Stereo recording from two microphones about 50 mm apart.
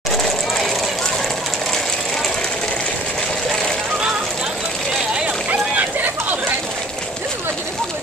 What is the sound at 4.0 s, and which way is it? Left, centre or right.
Vehicle, centre.